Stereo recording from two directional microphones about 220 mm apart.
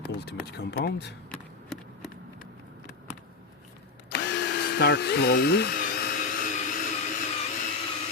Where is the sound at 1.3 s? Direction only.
Centre (ahead or behind).